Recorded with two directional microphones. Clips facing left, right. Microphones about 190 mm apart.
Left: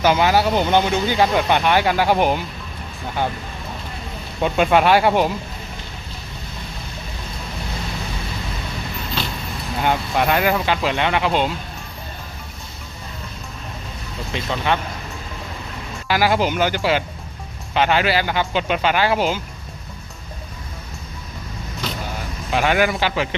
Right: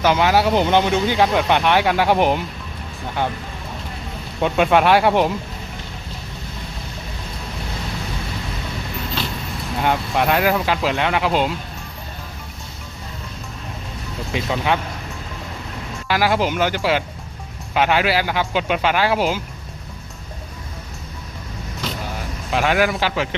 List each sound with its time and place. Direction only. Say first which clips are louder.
0.0 s speech: even; 5° left (ahead or behind)
4.4 s speech: even; centre (ahead or behind)
9.8 s speech: even; centre (ahead or behind)
14.3 s a man's voice: right 1 dB; 5° right (ahead or behind)
16.0 s speech: even; centre (ahead or behind)
22.5 s speech: even; centre (ahead or behind)